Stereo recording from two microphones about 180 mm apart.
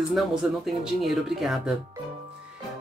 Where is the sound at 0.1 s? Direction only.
Centre (ahead or behind).